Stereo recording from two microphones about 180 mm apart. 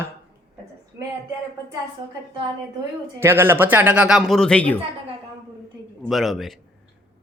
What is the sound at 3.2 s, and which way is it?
Speech, 15° right (ahead or behind).